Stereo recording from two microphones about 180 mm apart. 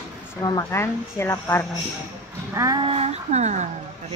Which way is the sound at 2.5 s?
20° right (ahead or behind).